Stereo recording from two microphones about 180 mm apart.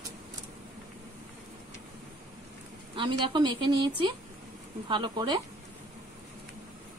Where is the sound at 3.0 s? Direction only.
25° right (ahead or behind).